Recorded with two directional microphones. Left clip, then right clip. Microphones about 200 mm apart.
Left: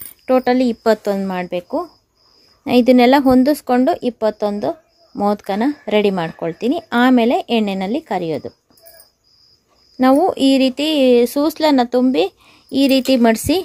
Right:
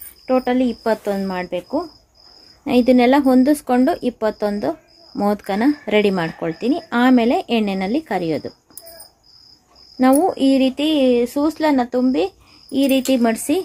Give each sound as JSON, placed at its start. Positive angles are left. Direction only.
{"t": 0.3, "sound": "speech", "side_deg": 60}
{"t": 2.6, "sound": "speech", "side_deg": 35}
{"t": 9.9, "sound": "speech", "side_deg": 35}